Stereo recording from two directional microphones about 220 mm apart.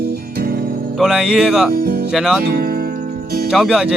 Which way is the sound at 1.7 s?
45° right (ahead or behind).